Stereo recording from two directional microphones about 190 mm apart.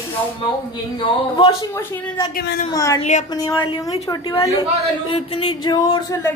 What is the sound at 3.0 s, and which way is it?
Speech, 40° left (ahead or behind).